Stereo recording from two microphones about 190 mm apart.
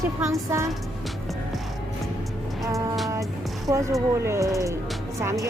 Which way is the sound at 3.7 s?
15° right (ahead or behind).